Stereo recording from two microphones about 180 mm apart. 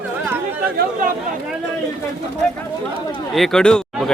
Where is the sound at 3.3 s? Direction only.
Centre (ahead or behind).